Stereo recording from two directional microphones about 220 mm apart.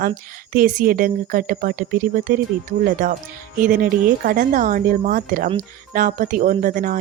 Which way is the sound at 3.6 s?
40° right (ahead or behind).